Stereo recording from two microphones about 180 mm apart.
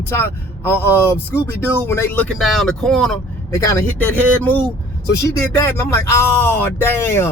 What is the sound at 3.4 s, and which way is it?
Speech, 15° left (ahead or behind).